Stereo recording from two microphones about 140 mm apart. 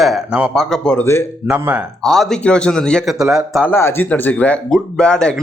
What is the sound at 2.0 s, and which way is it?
Speech, centre (ahead or behind).